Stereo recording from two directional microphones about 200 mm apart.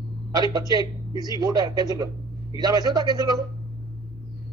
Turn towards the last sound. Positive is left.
turn(degrees=-20)  # may be behind; listen again after turning